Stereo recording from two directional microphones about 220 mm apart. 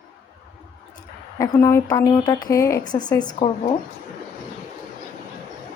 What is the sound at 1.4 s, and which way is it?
A woman's voice, 15° left (ahead or behind).